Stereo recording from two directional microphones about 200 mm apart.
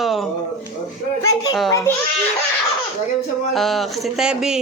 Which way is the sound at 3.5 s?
Centre (ahead or behind).